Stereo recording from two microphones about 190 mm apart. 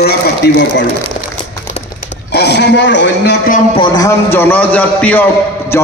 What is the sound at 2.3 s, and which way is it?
A man's voice, 60° left (ahead or behind).